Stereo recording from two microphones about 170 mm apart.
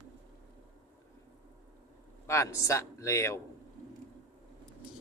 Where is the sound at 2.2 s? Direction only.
15° left (ahead or behind).